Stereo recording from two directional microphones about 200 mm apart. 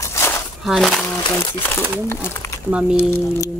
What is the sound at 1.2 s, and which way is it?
Speech, 25° left (ahead or behind).